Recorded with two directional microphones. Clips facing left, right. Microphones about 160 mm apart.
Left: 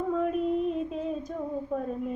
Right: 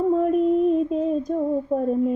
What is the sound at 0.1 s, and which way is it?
Female singing, 40° right (ahead or behind).